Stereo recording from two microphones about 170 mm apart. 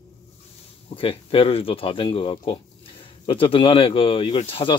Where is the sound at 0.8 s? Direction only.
30° left (ahead or behind).